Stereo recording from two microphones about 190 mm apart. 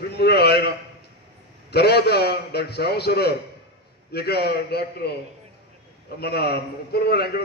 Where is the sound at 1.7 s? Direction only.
60° left (ahead or behind).